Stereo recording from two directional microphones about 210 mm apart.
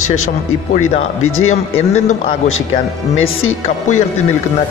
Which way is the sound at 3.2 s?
75° left (ahead or behind).